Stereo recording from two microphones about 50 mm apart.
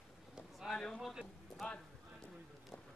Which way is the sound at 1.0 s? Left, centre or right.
Centre.